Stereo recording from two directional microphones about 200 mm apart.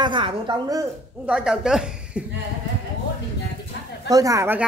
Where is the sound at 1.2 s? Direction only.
5° right (ahead or behind).